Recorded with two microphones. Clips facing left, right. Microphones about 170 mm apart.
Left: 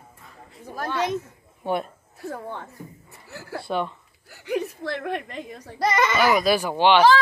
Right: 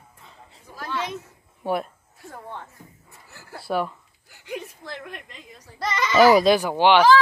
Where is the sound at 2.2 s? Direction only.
65° left (ahead or behind).